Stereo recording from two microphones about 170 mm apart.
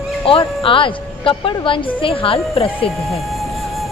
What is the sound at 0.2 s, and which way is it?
Speech, 30° left (ahead or behind).